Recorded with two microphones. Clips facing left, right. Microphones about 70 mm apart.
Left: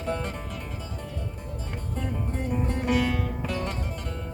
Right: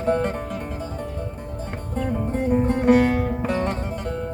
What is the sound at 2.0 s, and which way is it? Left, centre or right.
Music, right.